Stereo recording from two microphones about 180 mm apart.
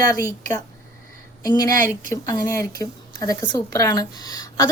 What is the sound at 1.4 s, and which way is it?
A woman's voice, 20° left (ahead or behind).